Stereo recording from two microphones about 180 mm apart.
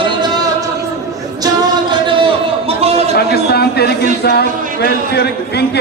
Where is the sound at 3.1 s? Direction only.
60° left (ahead or behind).